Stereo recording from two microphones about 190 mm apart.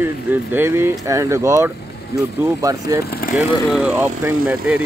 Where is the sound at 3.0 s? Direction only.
50° left (ahead or behind).